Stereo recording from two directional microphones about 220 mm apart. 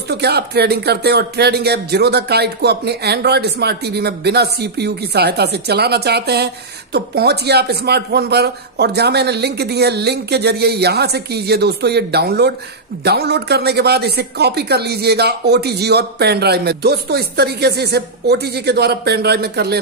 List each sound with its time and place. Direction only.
0.1 s speech: 45° right (ahead or behind)